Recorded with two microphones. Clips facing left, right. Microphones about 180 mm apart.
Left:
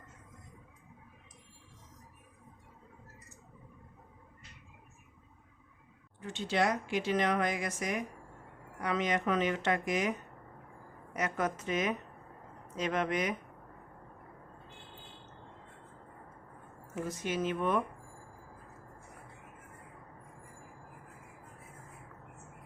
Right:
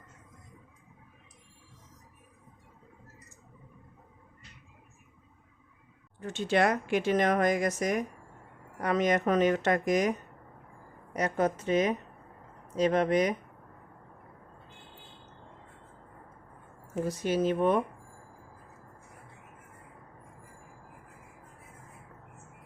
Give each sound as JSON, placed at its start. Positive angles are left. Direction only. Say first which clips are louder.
{"t": 6.1, "sound": "speech", "louder": "right 5 dB", "side_deg": -45}
{"t": 16.9, "sound": "speech", "louder": "right 6 dB", "side_deg": -35}